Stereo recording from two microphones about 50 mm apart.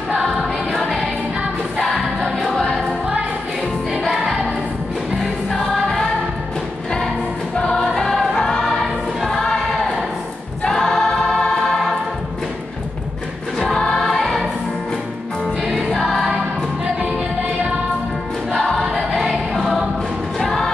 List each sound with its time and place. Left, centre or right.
0.2 s music: centre
2.0 s choir: left
2.4 s music: centre
4.0 s music: centre
7.6 s choir: centre
13.6 s music: centre
15.6 s music: centre
16.8 s music: right
18.5 s music: centre
18.9 s music: centre